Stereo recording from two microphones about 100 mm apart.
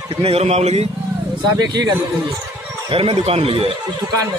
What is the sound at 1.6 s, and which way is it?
Speech, 45° right (ahead or behind).